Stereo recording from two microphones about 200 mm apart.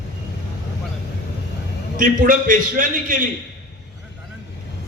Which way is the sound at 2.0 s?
40° right (ahead or behind).